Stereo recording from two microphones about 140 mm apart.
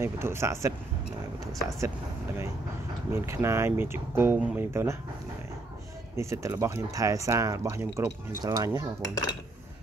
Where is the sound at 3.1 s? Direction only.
20° right (ahead or behind).